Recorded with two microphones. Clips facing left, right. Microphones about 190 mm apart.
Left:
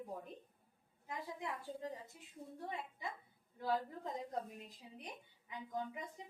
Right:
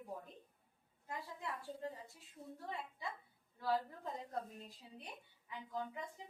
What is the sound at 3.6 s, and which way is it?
A woman's voice, 20° left (ahead or behind).